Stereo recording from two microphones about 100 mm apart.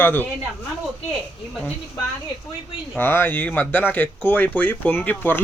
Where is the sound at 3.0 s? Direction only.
20° left (ahead or behind).